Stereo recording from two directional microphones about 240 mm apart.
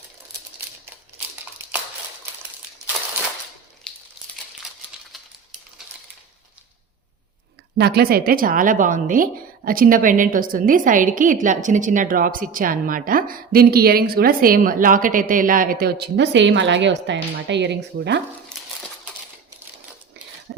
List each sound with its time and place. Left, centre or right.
7.8 s a woman's voice: right